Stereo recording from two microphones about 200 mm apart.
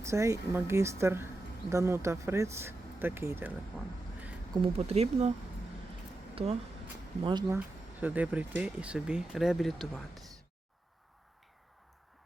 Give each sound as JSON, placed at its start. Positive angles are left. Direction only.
{"t": 0.0, "sound": "speech", "side_deg": -15}
{"t": 4.5, "sound": "speech", "side_deg": -30}
{"t": 7.3, "sound": "speech", "side_deg": -20}
{"t": 8.0, "sound": "speech", "side_deg": -10}